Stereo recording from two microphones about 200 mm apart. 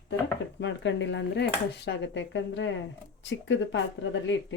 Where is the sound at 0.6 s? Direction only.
65° left (ahead or behind).